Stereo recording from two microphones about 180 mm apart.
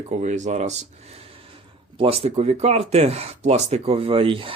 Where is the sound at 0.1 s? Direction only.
40° right (ahead or behind).